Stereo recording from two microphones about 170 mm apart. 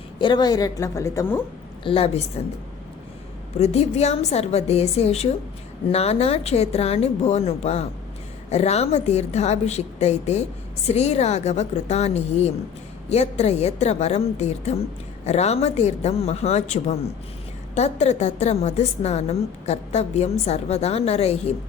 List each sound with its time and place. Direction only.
0.2 s a woman's voice: 25° left (ahead or behind)
1.8 s a woman's voice: 35° left (ahead or behind)
3.6 s a woman's voice: 40° left (ahead or behind)